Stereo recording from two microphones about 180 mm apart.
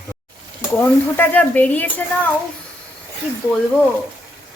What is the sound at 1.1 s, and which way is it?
Speech, 10° left (ahead or behind).